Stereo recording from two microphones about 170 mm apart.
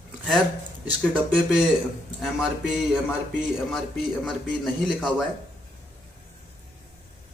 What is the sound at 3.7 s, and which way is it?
A man's voice, centre (ahead or behind).